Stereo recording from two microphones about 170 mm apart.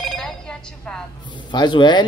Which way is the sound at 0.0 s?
5° left (ahead or behind).